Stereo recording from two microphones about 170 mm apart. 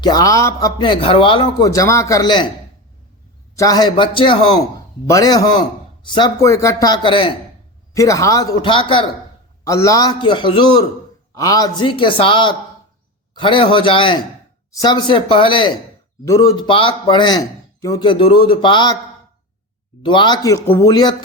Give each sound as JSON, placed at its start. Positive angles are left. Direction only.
{"t": 0.0, "sound": "speech", "side_deg": 20}
{"t": 3.5, "sound": "speech", "side_deg": 20}
{"t": 7.9, "sound": "speech", "side_deg": 20}
{"t": 9.6, "sound": "speech", "side_deg": 20}
{"t": 20.0, "sound": "speech", "side_deg": 30}